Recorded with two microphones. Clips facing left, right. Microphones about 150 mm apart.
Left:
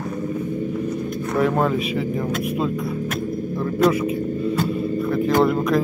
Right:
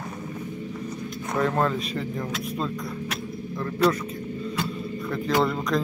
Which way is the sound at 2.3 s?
55° left (ahead or behind).